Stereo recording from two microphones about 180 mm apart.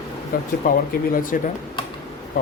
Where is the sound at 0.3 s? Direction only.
50° left (ahead or behind).